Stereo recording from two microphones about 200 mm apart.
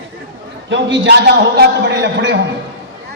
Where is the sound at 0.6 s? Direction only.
65° right (ahead or behind).